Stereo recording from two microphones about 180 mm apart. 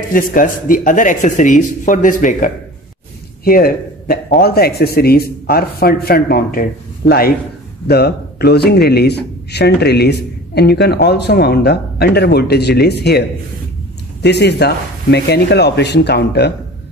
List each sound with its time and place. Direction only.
0.1 s a man's voice: 50° left (ahead or behind)
14.2 s speech: 70° left (ahead or behind)